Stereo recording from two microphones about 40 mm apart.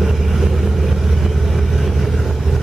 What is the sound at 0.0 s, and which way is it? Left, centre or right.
Vehicle, centre.